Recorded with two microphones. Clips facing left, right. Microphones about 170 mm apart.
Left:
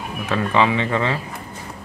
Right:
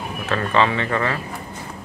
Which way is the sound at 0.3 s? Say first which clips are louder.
Left 1 dB; 15° left (ahead or behind).